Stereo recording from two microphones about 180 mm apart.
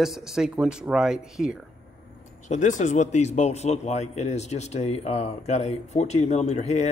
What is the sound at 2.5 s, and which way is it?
A man's voice, 45° left (ahead or behind).